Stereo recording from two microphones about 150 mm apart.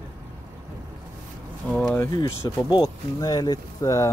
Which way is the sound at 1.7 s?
5° left (ahead or behind).